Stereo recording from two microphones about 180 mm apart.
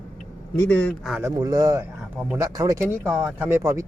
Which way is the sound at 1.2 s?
20° right (ahead or behind).